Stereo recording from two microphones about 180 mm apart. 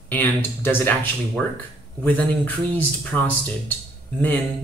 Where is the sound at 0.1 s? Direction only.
10° left (ahead or behind).